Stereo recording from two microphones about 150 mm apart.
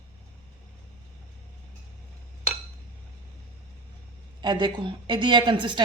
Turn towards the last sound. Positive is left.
turn(degrees=-30)  # may be behind; listen again after turning